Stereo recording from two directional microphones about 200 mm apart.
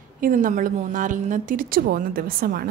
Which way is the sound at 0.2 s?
40° right (ahead or behind).